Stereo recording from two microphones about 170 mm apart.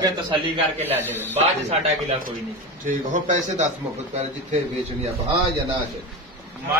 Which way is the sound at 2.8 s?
45° right (ahead or behind).